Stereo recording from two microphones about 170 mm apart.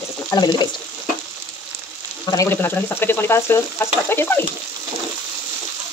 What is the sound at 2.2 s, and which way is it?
Speech, 20° left (ahead or behind).